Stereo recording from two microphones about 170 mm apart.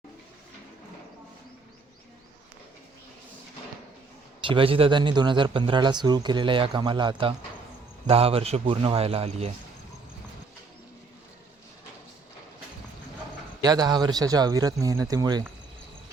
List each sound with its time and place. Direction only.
4.4 s a man's voice: 30° right (ahead or behind)
13.6 s speech: 25° right (ahead or behind)